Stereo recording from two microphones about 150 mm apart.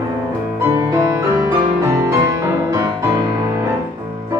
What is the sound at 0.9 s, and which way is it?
Music, 20° right (ahead or behind).